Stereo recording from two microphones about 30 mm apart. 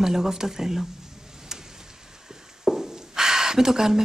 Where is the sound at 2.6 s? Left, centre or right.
Centre.